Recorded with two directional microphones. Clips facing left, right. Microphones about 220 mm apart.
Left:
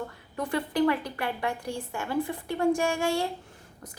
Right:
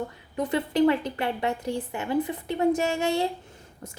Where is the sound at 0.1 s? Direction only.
20° right (ahead or behind).